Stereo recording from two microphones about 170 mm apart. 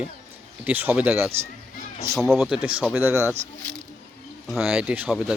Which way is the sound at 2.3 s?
Centre (ahead or behind).